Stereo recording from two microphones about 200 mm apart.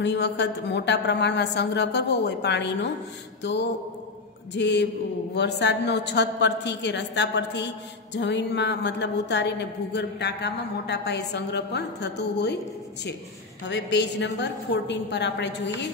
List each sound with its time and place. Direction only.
0.0 s a woman's voice: 60° left (ahead or behind)
4.6 s a woman's voice: 60° left (ahead or behind)
13.7 s a woman's voice: 60° left (ahead or behind)